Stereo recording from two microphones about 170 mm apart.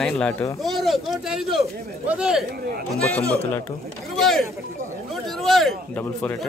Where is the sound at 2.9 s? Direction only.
10° left (ahead or behind).